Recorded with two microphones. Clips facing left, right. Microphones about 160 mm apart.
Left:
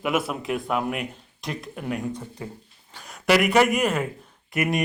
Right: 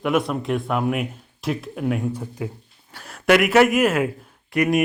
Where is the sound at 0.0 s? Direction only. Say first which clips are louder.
Right 4 dB; 5° left (ahead or behind).